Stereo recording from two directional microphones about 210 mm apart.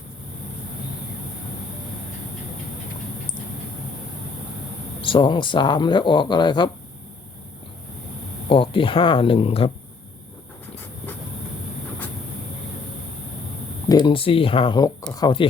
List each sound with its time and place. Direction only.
4.9 s speech: 25° left (ahead or behind)
8.4 s speech: 25° left (ahead or behind)
13.8 s speech: 20° left (ahead or behind)